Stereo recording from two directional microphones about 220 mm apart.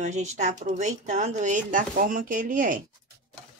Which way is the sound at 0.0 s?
30° right (ahead or behind).